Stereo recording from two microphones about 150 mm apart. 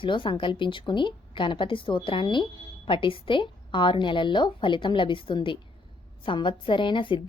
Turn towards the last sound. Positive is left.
turn(degrees=35)  # may be behind; listen again after turning